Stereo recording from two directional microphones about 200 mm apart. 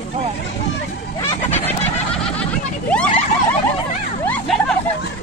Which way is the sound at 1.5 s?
10° left (ahead or behind).